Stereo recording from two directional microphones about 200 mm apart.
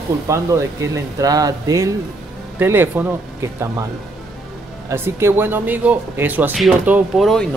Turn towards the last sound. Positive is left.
turn(degrees=0)  # may be behind; listen again after turning